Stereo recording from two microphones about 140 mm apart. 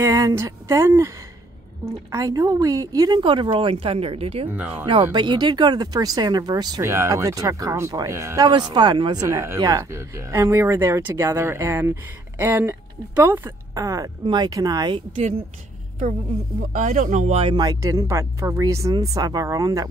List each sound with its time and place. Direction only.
0.0 s speech: 25° right (ahead or behind)
2.1 s a woman's voice: 25° right (ahead or behind); by 4.5 s 45° right (ahead or behind)
4.5 s speech: 10° right (ahead or behind)
5.1 s speech: 30° right (ahead or behind)
9.2 s speech: 20° right (ahead or behind)
16.7 s speech: 65° right (ahead or behind); by 17.6 s 45° right (ahead or behind)
17.6 s speech: 25° right (ahead or behind)